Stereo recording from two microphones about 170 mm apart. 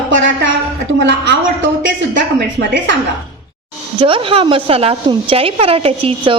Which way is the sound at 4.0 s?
30° right (ahead or behind).